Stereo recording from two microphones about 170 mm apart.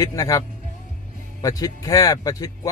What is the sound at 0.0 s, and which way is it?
Speech, 20° left (ahead or behind).